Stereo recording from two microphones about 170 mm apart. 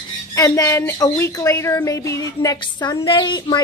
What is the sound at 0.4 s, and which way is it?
A woman's voice, 20° left (ahead or behind).